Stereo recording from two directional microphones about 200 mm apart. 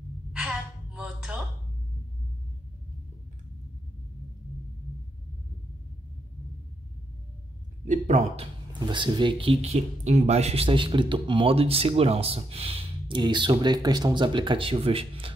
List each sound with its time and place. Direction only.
0.3 s a sound: 5° right (ahead or behind)
7.8 s a man's voice: 35° right (ahead or behind)
8.7 s speech: 25° right (ahead or behind)